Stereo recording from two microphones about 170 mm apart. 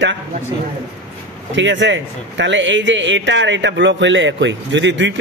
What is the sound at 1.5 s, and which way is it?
A man's voice, 90° right.